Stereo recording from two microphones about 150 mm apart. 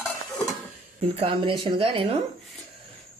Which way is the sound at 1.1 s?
40° right (ahead or behind).